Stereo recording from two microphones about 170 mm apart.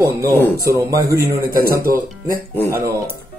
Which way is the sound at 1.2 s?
60° right (ahead or behind).